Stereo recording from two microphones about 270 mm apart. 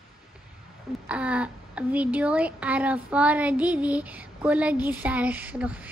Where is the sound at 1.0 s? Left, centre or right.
Centre.